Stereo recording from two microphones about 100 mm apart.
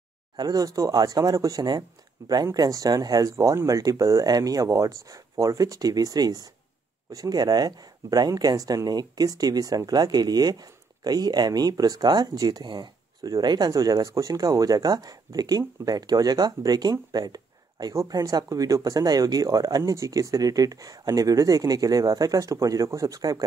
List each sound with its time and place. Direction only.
0.4 s speech: 40° right (ahead or behind)
17.1 s a sound: 40° right (ahead or behind)
17.9 s speech: 35° right (ahead or behind)